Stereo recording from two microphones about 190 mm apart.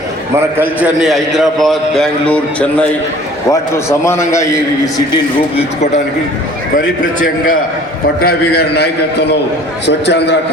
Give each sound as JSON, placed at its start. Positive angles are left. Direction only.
{"t": 0.3, "sound": "a man's voice", "side_deg": -10}
{"t": 6.7, "sound": "a man's voice", "side_deg": 45}
{"t": 8.2, "sound": "a man's voice", "side_deg": 55}